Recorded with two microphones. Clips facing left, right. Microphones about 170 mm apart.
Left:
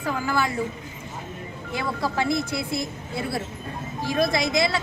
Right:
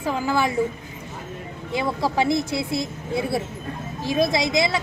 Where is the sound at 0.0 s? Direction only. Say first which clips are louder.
Right 3 dB; 20° right (ahead or behind).